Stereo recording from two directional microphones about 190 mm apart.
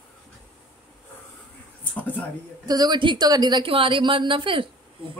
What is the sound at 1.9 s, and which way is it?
Speech, 10° left (ahead or behind).